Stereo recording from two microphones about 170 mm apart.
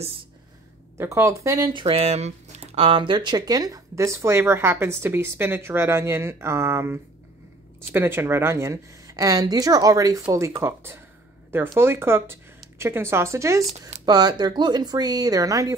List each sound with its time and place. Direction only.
0.9 s speech: 15° right (ahead or behind)
13.7 s speech: 40° right (ahead or behind)
14.0 s speech: 25° right (ahead or behind)